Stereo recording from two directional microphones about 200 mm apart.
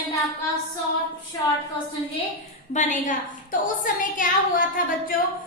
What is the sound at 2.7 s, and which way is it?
A woman's voice, 40° left (ahead or behind).